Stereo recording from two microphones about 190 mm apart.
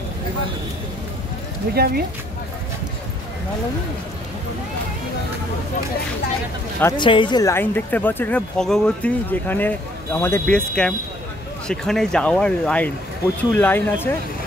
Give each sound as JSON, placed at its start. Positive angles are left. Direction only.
{"t": 1.7, "sound": "speech", "side_deg": -55}
{"t": 6.8, "sound": "speech", "side_deg": 15}